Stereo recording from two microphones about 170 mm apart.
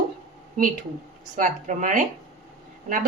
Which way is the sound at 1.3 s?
45° right (ahead or behind).